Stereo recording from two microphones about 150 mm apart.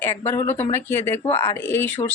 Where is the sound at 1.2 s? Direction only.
40° left (ahead or behind).